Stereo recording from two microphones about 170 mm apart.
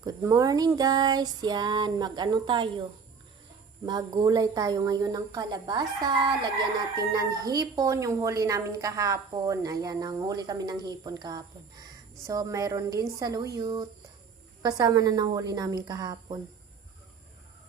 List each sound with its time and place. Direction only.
0.0 s speech: 20° right (ahead or behind)
3.8 s speech: 25° right (ahead or behind)